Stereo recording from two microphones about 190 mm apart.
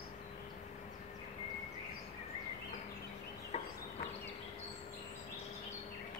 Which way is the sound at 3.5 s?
35° left (ahead or behind).